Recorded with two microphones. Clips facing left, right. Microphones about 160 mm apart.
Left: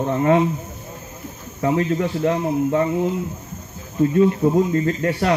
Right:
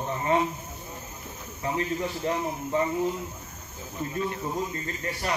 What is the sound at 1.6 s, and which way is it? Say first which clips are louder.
Speech: left 9 dB; 70° left (ahead or behind).